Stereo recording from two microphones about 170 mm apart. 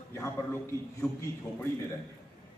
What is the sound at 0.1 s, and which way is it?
Speech, 15° left (ahead or behind).